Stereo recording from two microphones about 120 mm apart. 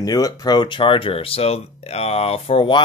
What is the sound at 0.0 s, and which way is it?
Speech, 30° left (ahead or behind).